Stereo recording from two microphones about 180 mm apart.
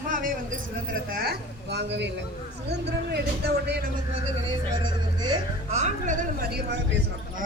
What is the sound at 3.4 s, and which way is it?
Speech, 65° right (ahead or behind).